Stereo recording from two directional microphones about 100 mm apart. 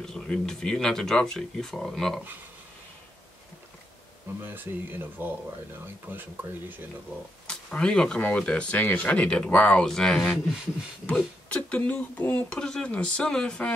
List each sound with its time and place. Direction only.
0.0 s speech: 5° left (ahead or behind)
4.4 s speech: 20° right (ahead or behind)
7.4 s speech: 10° left (ahead or behind)
11.5 s speech: 15° left (ahead or behind)